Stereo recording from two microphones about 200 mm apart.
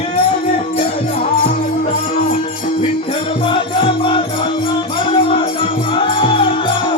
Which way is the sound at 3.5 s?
25° left (ahead or behind).